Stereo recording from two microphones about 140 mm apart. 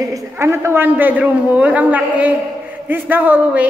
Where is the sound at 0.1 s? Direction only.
20° right (ahead or behind).